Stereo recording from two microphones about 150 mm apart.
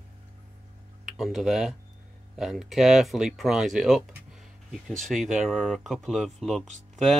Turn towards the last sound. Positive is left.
turn(degrees=0)  # may be behind; listen again after turning